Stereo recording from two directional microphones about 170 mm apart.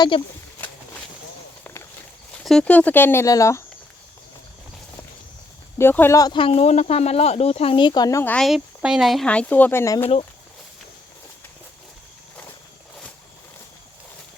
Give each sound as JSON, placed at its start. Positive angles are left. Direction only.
{"t": 0.1, "sound": "speech", "side_deg": 30}
{"t": 1.6, "sound": "a sound", "side_deg": 15}
{"t": 2.4, "sound": "speech", "side_deg": 5}
{"t": 5.7, "sound": "speech", "side_deg": 15}
{"t": 8.2, "sound": "speech", "side_deg": 10}
{"t": 8.4, "sound": "speech", "side_deg": -5}